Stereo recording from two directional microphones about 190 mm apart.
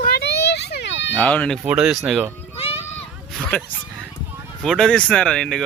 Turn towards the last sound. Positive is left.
turn(degrees=5)  # may be behind; listen again after turning